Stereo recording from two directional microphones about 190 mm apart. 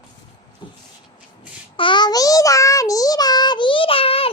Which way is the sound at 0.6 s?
25° left (ahead or behind).